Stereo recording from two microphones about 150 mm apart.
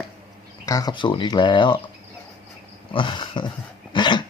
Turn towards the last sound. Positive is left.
turn(degrees=30)  # may be behind; listen again after turning